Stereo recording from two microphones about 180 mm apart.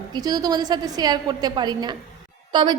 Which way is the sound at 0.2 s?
20° right (ahead or behind).